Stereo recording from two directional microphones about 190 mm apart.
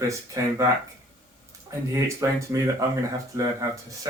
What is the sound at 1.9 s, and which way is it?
Speech, 15° right (ahead or behind).